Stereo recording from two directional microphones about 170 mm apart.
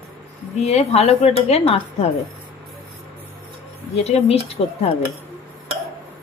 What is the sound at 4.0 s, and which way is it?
Speech, 40° left (ahead or behind).